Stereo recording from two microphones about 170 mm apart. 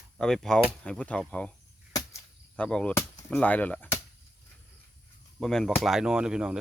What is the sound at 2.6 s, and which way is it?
Speech, 5° left (ahead or behind).